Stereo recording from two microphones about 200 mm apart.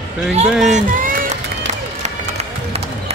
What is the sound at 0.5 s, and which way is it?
Speech, centre (ahead or behind).